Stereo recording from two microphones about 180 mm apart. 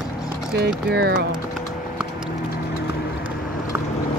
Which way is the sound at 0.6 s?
65° right (ahead or behind).